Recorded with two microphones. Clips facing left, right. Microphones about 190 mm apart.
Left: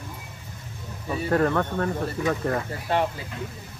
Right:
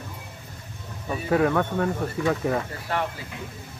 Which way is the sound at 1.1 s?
5° right (ahead or behind).